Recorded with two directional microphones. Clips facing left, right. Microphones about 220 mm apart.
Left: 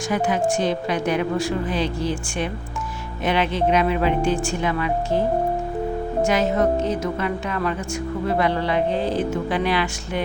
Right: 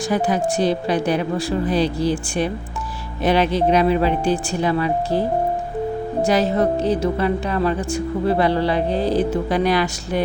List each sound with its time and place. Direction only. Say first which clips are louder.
0.1 s speech: right 1 dB; 35° right (ahead or behind)
6.2 s speech: right 2 dB; 35° right (ahead or behind)